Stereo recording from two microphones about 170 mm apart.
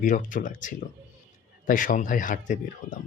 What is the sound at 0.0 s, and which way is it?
Speech, 50° left (ahead or behind).